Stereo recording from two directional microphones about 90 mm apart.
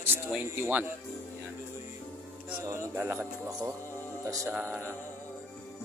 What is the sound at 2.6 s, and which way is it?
Speech, 30° right (ahead or behind).